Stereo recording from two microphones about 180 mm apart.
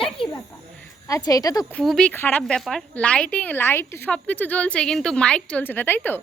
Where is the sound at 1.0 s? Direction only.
20° left (ahead or behind).